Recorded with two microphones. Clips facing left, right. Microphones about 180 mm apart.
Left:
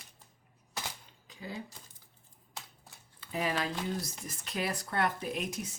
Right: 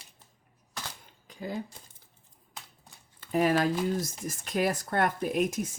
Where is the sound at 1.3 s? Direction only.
50° right (ahead or behind).